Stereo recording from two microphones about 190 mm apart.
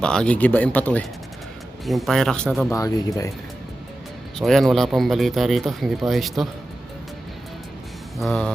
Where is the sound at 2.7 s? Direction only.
20° left (ahead or behind).